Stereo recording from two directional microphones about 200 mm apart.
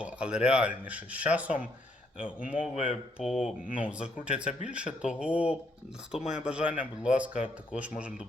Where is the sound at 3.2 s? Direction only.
Centre (ahead or behind).